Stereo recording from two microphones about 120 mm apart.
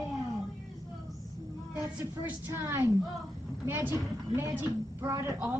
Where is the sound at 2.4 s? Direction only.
20° right (ahead or behind).